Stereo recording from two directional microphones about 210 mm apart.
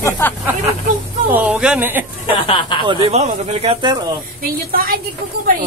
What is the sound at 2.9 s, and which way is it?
Speech, 30° right (ahead or behind).